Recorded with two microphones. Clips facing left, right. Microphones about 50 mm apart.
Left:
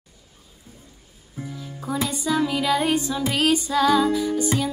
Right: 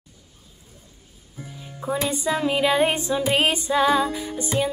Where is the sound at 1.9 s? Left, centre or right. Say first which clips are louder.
Right 1 dB; right.